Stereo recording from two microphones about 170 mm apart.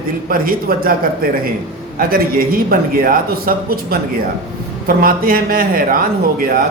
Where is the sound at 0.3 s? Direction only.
60° right (ahead or behind).